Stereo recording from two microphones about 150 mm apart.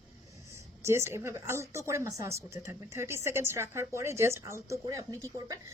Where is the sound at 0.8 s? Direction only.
15° right (ahead or behind).